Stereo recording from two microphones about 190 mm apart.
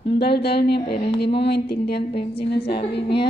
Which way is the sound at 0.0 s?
60° left (ahead or behind).